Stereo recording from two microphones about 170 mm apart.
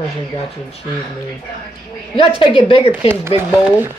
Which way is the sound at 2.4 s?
30° left (ahead or behind).